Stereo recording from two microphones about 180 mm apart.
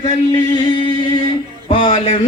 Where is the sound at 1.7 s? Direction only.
35° left (ahead or behind).